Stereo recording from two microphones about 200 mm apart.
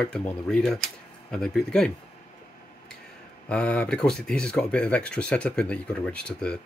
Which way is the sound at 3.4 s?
5° left (ahead or behind).